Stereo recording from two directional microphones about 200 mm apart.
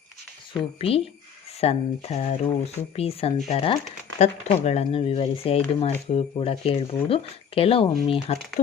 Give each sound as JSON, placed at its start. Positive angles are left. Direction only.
{"t": 0.8, "sound": "speech", "side_deg": 30}